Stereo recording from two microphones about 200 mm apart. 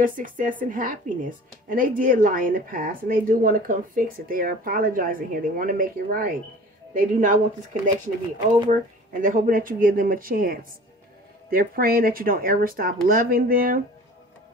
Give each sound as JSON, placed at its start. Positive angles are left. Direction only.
{"t": 0.0, "sound": "a woman's voice", "side_deg": -40}
{"t": 8.6, "sound": "a woman's voice", "side_deg": -40}